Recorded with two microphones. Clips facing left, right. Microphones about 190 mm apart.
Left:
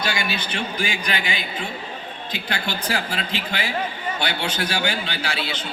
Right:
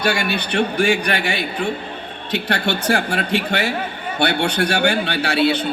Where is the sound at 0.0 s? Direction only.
65° right (ahead or behind).